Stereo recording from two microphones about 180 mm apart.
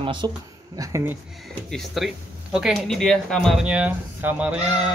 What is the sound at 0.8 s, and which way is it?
Speech, 15° right (ahead or behind).